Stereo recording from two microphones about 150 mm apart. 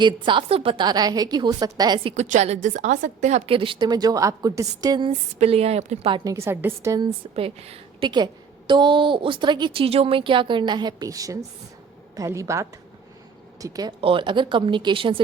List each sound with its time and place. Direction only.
0.0 s a woman's voice: 35° right (ahead or behind)
2.1 s a woman's voice: 55° right (ahead or behind); by 5.1 s 30° right (ahead or behind)
5.4 s a woman's voice: 45° right (ahead or behind)
6.1 s a woman's voice: 20° right (ahead or behind)
7.3 s a woman's voice: 40° right (ahead or behind)
8.1 s a woman's voice: 30° right (ahead or behind)
14.0 s a woman's voice: 35° right (ahead or behind)